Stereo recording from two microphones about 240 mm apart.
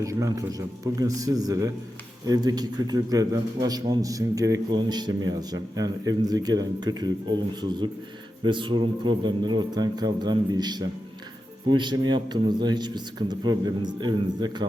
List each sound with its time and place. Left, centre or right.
0.0 s a man's voice: centre